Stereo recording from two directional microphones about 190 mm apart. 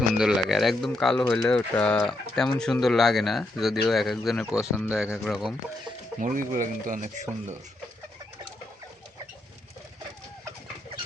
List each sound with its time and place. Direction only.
0.2 s speech: centre (ahead or behind)
6.1 s speech: 45° right (ahead or behind)